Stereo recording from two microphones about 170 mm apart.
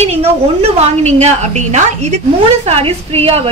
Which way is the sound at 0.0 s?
35° right (ahead or behind).